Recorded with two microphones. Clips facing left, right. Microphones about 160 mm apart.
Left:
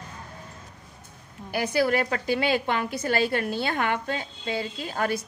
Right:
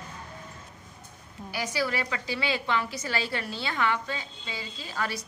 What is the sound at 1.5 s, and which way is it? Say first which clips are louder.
A woman's voice: left 7 dB; 55° left (ahead or behind).